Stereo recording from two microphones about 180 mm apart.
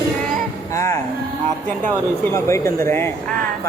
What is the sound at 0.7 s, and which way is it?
Music, 15° left (ahead or behind).